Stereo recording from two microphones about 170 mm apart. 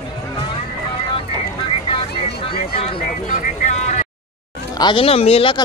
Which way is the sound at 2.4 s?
30° left (ahead or behind).